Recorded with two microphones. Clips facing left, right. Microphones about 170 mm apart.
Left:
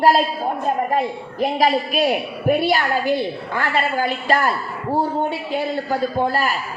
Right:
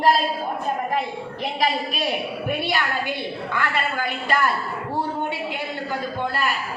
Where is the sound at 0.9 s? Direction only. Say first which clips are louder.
Left 4 dB; 40° left (ahead or behind).